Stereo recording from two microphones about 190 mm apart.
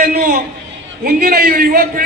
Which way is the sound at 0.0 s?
50° right (ahead or behind).